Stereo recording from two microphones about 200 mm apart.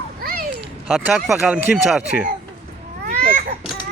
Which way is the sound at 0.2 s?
50° right (ahead or behind).